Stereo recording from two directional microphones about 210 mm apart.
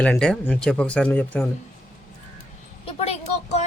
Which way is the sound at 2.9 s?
30° left (ahead or behind).